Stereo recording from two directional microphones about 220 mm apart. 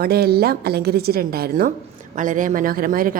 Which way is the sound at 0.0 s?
45° right (ahead or behind).